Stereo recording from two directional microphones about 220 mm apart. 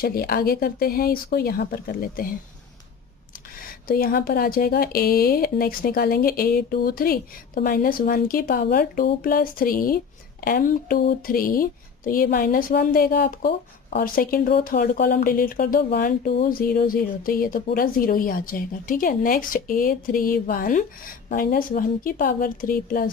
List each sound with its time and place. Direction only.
0.0 s speech: 45° left (ahead or behind)
3.8 s speech: 40° left (ahead or behind)